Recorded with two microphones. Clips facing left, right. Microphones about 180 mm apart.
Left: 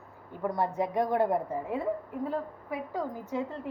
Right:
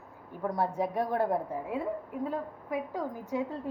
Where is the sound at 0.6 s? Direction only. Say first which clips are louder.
Left 1 dB; 10° right (ahead or behind).